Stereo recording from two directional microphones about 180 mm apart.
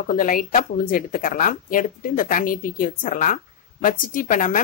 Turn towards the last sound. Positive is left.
turn(degrees=50)  # may be behind; listen again after turning